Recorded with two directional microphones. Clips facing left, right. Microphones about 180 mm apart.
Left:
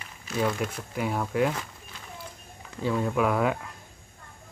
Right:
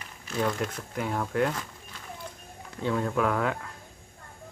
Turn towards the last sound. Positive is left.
turn(degrees=10)  # may be behind; listen again after turning